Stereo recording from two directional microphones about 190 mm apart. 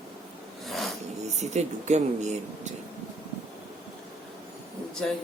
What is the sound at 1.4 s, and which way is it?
Speech, 35° right (ahead or behind).